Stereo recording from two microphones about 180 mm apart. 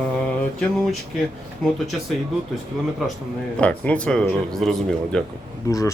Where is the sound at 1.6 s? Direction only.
5° left (ahead or behind).